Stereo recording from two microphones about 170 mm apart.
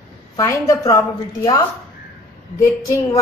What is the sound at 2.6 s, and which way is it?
Speech, 20° left (ahead or behind).